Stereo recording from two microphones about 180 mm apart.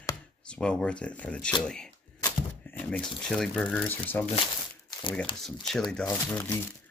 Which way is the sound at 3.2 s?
5° left (ahead or behind).